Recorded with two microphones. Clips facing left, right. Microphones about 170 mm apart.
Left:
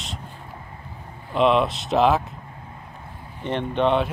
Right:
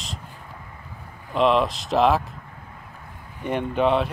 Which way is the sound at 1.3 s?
Centre (ahead or behind).